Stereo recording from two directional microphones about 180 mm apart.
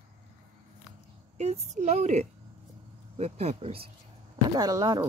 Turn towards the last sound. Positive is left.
turn(degrees=-20)  # may be behind; listen again after turning